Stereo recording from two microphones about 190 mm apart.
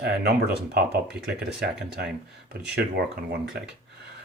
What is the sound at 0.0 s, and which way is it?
Speech, 60° right (ahead or behind).